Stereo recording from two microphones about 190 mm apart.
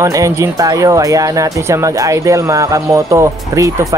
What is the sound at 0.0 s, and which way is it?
Speech, 15° right (ahead or behind).